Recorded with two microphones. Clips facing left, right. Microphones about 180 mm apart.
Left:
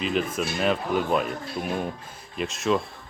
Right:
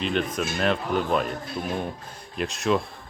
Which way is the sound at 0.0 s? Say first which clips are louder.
Even; 5° left (ahead or behind).